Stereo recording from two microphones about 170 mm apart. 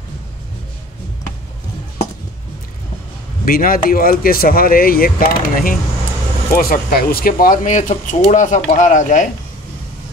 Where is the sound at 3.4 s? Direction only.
55° left (ahead or behind).